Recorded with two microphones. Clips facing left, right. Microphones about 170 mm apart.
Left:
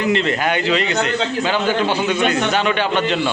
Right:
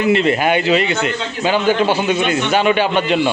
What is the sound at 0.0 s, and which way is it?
Speech, 10° right (ahead or behind).